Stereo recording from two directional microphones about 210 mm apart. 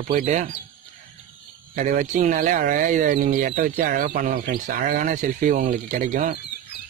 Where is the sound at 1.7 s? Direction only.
35° right (ahead or behind).